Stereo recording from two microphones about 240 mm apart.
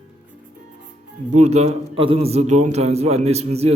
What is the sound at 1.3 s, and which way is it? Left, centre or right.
A man's voice, right.